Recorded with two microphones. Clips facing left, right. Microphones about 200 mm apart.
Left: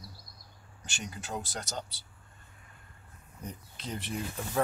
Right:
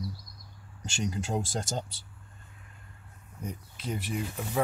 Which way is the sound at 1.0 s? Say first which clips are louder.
Right 7 dB; 25° right (ahead or behind).